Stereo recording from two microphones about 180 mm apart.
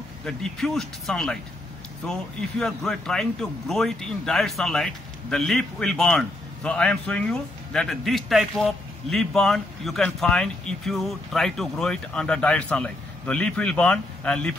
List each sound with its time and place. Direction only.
0.2 s speech: 5° left (ahead or behind)